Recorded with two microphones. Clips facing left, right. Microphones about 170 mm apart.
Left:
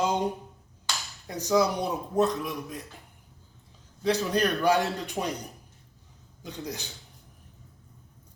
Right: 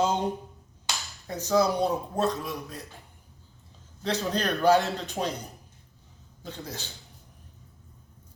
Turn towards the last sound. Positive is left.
turn(degrees=15)  # may be behind; listen again after turning